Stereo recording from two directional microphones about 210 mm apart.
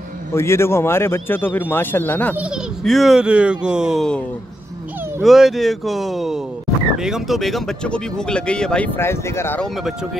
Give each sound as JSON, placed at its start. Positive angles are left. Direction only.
{"t": 0.3, "sound": "a man's voice", "side_deg": 10}
{"t": 2.3, "sound": "speech", "side_deg": 0}
{"t": 5.2, "sound": "speech", "side_deg": 0}